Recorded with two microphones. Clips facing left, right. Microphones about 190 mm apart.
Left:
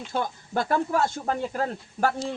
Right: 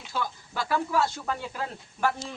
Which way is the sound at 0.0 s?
50° left (ahead or behind).